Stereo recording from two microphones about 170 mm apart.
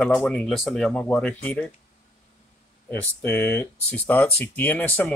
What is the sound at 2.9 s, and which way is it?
Speech, 10° left (ahead or behind).